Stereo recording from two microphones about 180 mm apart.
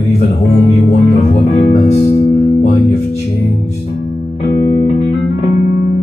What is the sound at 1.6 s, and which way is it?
Music, 40° left (ahead or behind).